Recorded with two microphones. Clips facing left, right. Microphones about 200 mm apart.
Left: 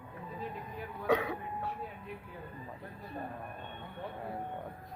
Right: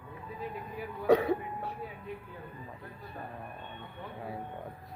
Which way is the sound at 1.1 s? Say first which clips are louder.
Right 6 dB; 35° right (ahead or behind).